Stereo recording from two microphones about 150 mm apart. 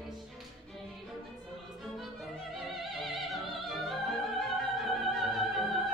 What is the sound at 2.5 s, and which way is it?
Opera, centre (ahead or behind).